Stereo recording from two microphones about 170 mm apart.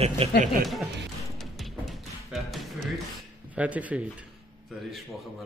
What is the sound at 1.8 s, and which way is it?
Music, centre (ahead or behind).